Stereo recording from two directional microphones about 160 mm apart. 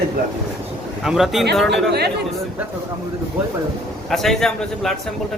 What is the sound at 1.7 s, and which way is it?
Speech, 90° right.